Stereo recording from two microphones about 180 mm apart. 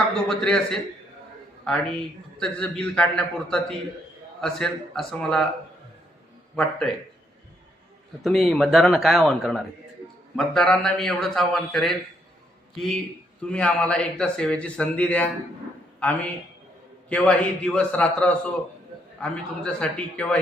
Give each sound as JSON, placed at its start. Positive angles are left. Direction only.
{"t": 0.3, "sound": "a man's voice", "side_deg": 5}
{"t": 6.6, "sound": "a man's voice", "side_deg": 5}
{"t": 8.2, "sound": "a man's voice", "side_deg": 0}
{"t": 13.5, "sound": "a man's voice", "side_deg": 5}